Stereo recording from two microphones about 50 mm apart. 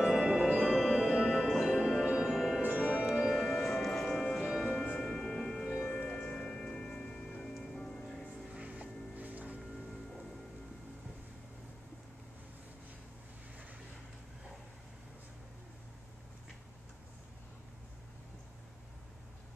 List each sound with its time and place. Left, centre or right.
0.0 s tubular bells: centre
1.9 s music: centre
2.7 s music: right
3.3 s music: centre
5.8 s music: left
6.0 s music: centre
8.5 s music: right